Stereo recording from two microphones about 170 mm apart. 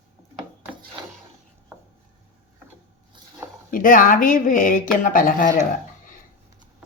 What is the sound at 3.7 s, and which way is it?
Speech, 55° left (ahead or behind).